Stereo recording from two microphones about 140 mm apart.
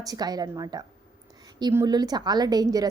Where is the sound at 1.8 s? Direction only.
30° right (ahead or behind).